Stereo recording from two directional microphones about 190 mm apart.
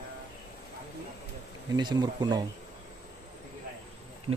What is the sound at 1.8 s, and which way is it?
Speech, 25° right (ahead or behind).